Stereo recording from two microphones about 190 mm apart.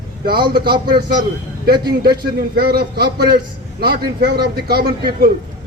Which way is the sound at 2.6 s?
55° right (ahead or behind).